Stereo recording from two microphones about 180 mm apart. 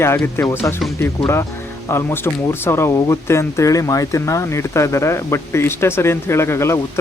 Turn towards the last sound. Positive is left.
turn(degrees=15)  # may be behind; listen again after turning